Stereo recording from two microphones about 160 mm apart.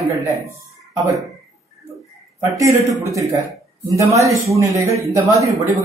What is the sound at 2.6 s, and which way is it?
A man's voice, 20° right (ahead or behind).